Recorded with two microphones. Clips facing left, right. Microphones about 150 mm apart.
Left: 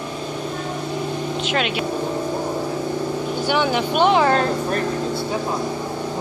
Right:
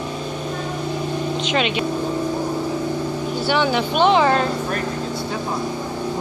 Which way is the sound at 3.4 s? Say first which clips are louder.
Right 1 dB; 10° left (ahead or behind).